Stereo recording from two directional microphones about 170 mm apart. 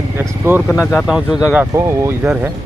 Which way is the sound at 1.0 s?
5° right (ahead or behind).